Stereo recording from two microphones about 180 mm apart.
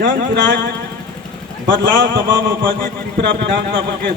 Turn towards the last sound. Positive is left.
turn(degrees=-65)  # may be behind; listen again after turning